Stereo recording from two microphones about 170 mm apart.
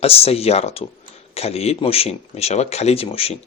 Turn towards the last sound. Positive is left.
turn(degrees=35)  # may be behind; listen again after turning